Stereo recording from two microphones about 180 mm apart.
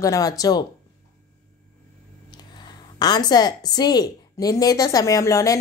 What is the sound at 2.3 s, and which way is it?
A woman's voice, 25° left (ahead or behind).